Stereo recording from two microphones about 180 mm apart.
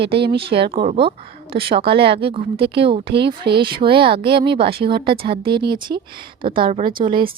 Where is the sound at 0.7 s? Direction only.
30° right (ahead or behind).